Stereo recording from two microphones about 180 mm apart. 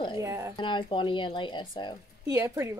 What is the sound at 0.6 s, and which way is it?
Speech, 25° left (ahead or behind).